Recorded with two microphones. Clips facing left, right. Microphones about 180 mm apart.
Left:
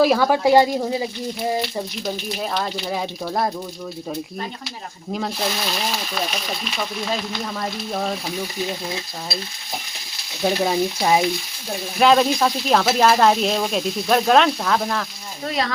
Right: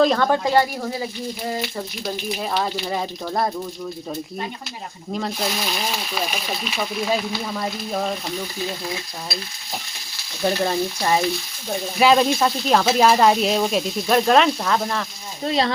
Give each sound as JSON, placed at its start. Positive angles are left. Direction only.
{"t": 0.0, "sound": "speech", "side_deg": 5}
{"t": 2.0, "sound": "speech", "side_deg": 0}
{"t": 5.1, "sound": "speech", "side_deg": 0}
{"t": 10.4, "sound": "speech", "side_deg": 10}
{"t": 11.9, "sound": "speech", "side_deg": 0}
{"t": 15.4, "sound": "speech", "side_deg": -25}